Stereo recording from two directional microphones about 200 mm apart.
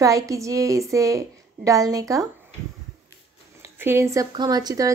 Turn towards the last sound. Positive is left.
turn(degrees=-20)  # may be behind; listen again after turning